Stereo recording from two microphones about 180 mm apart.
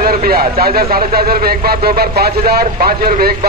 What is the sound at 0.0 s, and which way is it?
Speech, 55° right (ahead or behind).